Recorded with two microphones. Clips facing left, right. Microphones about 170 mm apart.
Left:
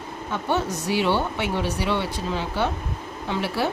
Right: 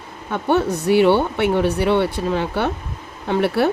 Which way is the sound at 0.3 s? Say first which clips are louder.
Right 7 dB; 55° right (ahead or behind).